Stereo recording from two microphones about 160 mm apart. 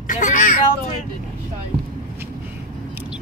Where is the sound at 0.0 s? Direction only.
50° left (ahead or behind).